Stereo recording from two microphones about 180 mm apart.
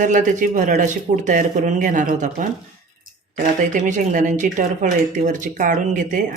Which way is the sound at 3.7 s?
45° right (ahead or behind).